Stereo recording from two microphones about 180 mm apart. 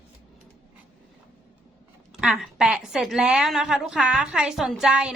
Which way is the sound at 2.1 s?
5° right (ahead or behind).